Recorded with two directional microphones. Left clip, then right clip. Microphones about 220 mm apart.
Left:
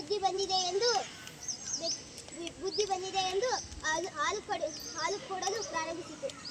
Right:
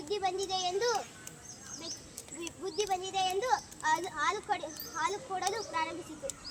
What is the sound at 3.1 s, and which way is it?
A child's voice, centre (ahead or behind).